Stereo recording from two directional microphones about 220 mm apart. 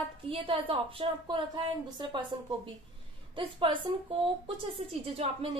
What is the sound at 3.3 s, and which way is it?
A woman's voice, 25° right (ahead or behind).